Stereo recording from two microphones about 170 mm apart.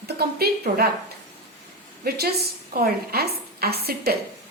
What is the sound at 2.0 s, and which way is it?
A woman's voice, 65° right (ahead or behind).